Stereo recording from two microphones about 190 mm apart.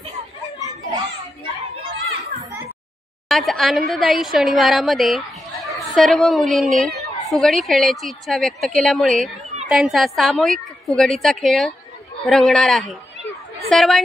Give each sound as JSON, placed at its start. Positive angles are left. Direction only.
{"t": 0.6, "sound": "children playing", "side_deg": -20}
{"t": 3.3, "sound": "a woman's voice", "side_deg": 0}